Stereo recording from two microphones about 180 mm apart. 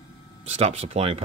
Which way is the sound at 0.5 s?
35° right (ahead or behind).